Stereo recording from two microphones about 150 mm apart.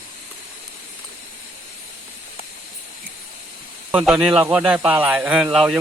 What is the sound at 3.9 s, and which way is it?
Speech, 5° right (ahead or behind).